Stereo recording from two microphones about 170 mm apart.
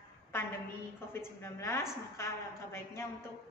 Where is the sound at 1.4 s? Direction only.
15° left (ahead or behind).